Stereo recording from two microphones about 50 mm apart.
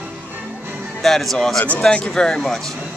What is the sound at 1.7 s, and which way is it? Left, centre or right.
Speech, centre.